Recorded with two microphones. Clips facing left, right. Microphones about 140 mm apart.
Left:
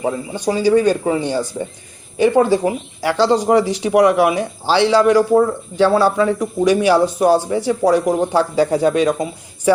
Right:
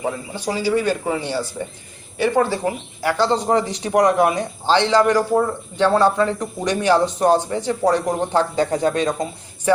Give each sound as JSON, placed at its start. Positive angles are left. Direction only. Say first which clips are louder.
{"t": 0.0, "sound": "speech", "louder": "left 5 dB", "side_deg": 15}